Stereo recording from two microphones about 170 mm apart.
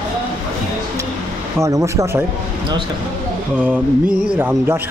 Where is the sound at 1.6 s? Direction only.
20° right (ahead or behind).